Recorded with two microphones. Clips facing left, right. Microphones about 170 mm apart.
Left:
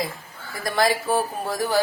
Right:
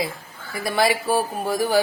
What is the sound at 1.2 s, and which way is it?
Speech, 10° right (ahead or behind).